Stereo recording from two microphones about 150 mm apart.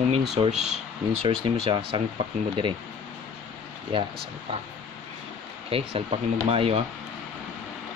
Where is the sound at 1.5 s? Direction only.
35° right (ahead or behind).